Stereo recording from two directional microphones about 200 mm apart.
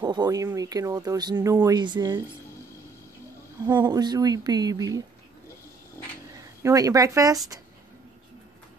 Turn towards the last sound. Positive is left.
turn(degrees=-15)  # may be behind; listen again after turning